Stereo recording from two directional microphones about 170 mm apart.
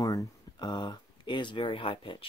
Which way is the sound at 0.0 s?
20° left (ahead or behind).